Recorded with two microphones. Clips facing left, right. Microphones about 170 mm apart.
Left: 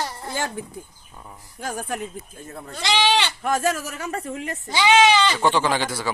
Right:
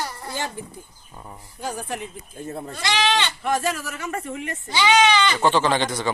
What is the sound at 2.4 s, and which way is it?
Speech, 30° right (ahead or behind).